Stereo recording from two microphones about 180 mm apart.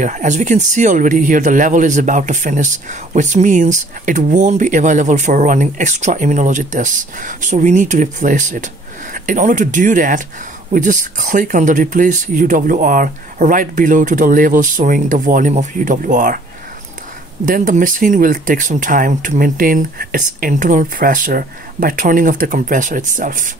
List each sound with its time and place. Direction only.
0.0 s speech: 40° right (ahead or behind)
17.5 s speech: 45° right (ahead or behind)